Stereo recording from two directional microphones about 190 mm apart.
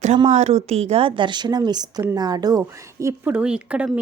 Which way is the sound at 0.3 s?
35° right (ahead or behind).